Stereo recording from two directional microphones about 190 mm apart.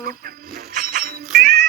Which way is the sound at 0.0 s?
50° right (ahead or behind).